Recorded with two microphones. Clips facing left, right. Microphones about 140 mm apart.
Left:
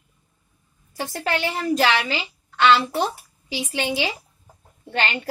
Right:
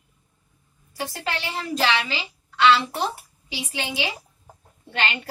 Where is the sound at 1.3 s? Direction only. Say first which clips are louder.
Left 7 dB; 50° left (ahead or behind).